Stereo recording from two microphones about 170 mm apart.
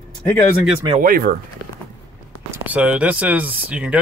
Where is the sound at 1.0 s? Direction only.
60° right (ahead or behind).